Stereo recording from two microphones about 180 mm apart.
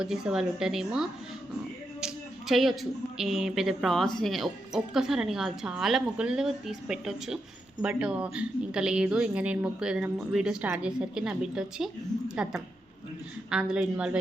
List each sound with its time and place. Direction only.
0.0 s speech: 5° right (ahead or behind)
2.0 s a sound: centre (ahead or behind)
3.2 s speech: 5° right (ahead or behind)